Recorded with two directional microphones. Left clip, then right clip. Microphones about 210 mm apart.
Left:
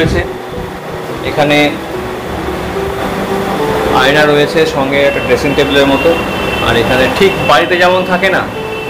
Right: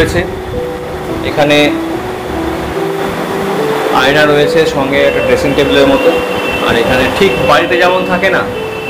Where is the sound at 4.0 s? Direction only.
Centre (ahead or behind).